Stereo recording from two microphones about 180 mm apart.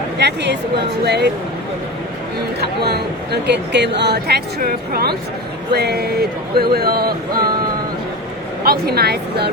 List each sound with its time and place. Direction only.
0.2 s speech: 65° right (ahead or behind)
2.6 s speech: 60° right (ahead or behind)
8.6 s speech: 60° right (ahead or behind)